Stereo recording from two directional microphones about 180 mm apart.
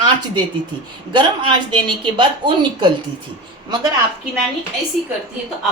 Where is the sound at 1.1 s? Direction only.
25° right (ahead or behind).